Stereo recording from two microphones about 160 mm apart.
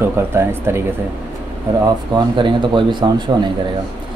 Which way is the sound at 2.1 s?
30° right (ahead or behind).